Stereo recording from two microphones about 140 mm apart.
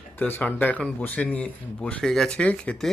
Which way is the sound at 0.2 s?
15° left (ahead or behind).